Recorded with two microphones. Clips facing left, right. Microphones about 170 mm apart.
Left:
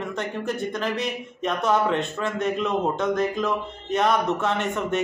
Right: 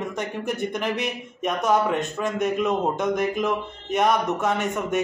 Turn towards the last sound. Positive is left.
turn(degrees=-10)  # may be behind; listen again after turning